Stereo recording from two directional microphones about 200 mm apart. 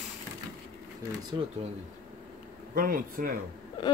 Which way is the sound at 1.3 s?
25° right (ahead or behind).